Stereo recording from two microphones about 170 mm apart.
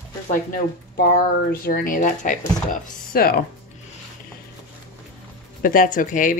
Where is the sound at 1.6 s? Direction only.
55° left (ahead or behind).